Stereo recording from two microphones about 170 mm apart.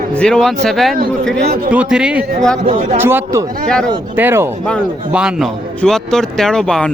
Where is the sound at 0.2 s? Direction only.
5° left (ahead or behind).